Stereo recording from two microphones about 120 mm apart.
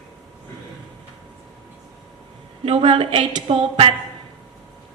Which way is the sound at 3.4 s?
55° right (ahead or behind).